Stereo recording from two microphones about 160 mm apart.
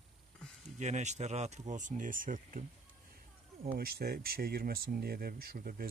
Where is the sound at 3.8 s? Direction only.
70° right (ahead or behind).